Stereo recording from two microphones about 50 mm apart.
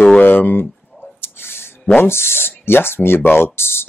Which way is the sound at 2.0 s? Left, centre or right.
Left.